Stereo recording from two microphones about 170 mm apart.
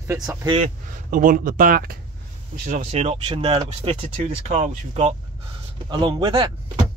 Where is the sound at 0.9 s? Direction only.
50° right (ahead or behind).